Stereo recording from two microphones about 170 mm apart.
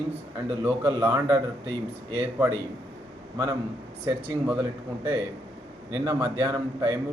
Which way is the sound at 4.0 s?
15° right (ahead or behind).